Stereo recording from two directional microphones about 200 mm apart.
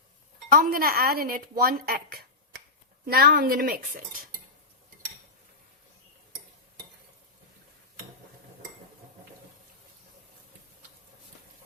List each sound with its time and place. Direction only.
0.5 s speech: 45° right (ahead or behind)